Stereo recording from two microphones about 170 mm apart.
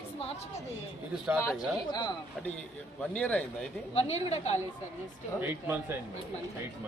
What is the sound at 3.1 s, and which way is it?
Speech, 5° left (ahead or behind).